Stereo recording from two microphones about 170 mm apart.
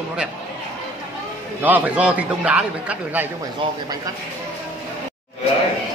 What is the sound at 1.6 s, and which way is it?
Speech, 10° right (ahead or behind).